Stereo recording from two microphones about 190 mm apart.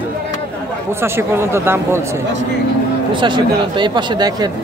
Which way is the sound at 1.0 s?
15° right (ahead or behind).